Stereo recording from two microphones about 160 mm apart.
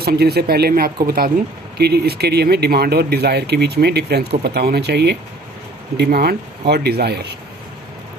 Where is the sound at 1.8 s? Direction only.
85° right.